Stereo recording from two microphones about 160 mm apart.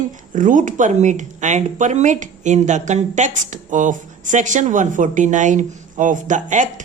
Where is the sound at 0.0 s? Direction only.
55° right (ahead or behind).